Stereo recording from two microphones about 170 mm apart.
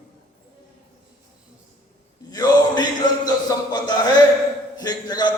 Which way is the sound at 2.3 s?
20° left (ahead or behind).